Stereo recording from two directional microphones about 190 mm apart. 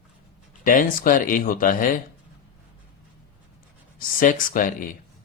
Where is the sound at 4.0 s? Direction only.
45° left (ahead or behind).